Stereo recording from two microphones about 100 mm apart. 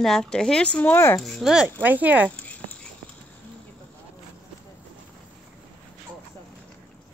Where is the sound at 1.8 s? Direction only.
15° right (ahead or behind).